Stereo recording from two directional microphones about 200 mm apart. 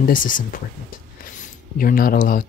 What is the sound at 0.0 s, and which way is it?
Speech, 45° left (ahead or behind).